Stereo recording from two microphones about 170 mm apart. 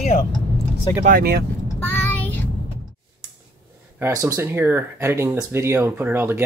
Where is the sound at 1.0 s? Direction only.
65° right (ahead or behind).